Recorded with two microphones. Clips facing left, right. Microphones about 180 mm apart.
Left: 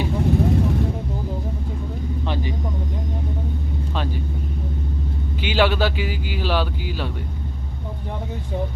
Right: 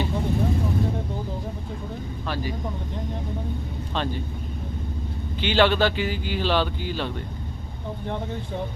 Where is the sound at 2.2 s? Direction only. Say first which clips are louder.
Left 2 dB; 20° left (ahead or behind).